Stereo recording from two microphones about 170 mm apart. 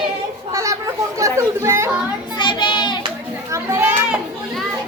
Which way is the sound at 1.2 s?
15° right (ahead or behind).